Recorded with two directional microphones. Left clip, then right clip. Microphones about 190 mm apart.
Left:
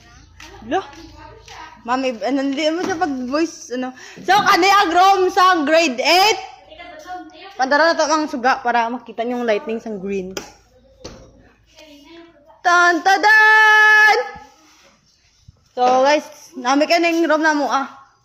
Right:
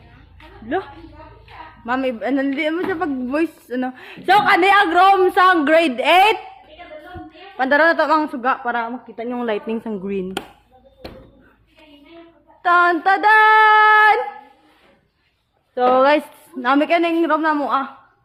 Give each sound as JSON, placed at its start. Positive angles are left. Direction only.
{"t": 1.8, "sound": "a man's voice", "side_deg": -15}
{"t": 4.4, "sound": "a woman's voice", "side_deg": 0}
{"t": 5.0, "sound": "a man's voice", "side_deg": -15}
{"t": 7.5, "sound": "speech", "side_deg": -25}
{"t": 8.3, "sound": "a woman's voice", "side_deg": 10}
{"t": 12.6, "sound": "a woman's voice", "side_deg": 5}
{"t": 15.7, "sound": "speech", "side_deg": -25}
{"t": 16.6, "sound": "a woman's voice", "side_deg": -10}